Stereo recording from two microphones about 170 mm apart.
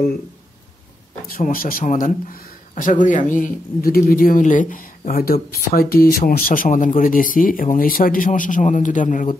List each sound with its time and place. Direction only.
1.2 s speech: 55° left (ahead or behind)